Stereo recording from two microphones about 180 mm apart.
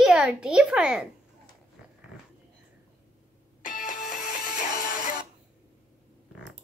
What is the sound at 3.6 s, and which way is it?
Music, 50° left (ahead or behind).